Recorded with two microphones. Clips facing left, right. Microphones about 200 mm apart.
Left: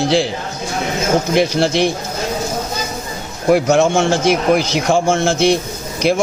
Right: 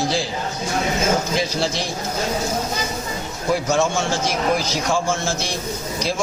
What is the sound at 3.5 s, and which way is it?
A man's voice, 65° left (ahead or behind).